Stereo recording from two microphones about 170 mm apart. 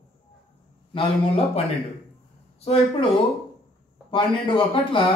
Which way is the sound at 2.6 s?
35° left (ahead or behind).